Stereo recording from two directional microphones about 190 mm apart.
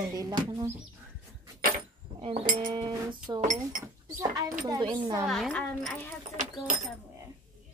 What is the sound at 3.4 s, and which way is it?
Speech, 45° right (ahead or behind).